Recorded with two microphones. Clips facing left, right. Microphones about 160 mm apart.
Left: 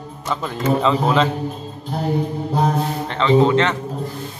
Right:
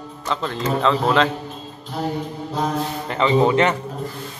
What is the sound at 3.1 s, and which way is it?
Speech, 10° right (ahead or behind).